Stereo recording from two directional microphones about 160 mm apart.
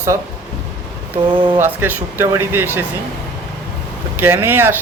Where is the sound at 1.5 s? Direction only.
15° right (ahead or behind).